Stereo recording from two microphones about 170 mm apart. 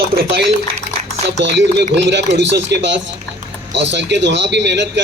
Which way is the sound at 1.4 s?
90° right.